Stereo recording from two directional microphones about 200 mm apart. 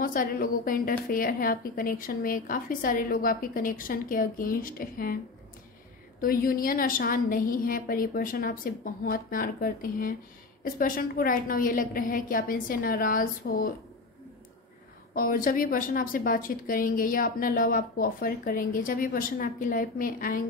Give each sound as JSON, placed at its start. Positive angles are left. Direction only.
{"t": 0.0, "sound": "a woman's voice", "side_deg": 45}
{"t": 6.2, "sound": "a woman's voice", "side_deg": 45}
{"t": 15.1, "sound": "a woman's voice", "side_deg": 45}